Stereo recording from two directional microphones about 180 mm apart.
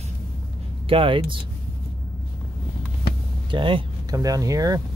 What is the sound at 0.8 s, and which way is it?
Speech, 30° right (ahead or behind).